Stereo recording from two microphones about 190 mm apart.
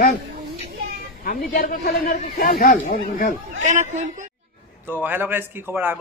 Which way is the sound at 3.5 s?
40° right (ahead or behind).